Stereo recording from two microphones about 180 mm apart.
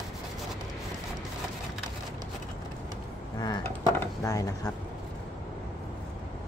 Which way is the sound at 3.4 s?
25° left (ahead or behind).